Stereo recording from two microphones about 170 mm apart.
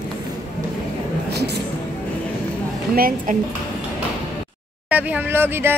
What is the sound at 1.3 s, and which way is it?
Music, 75° right (ahead or behind).